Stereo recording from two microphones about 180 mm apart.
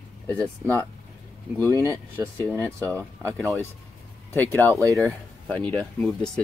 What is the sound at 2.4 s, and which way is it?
Speech, 10° left (ahead or behind).